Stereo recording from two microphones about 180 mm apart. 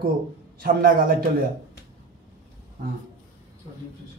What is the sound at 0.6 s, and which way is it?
Speech, 50° right (ahead or behind).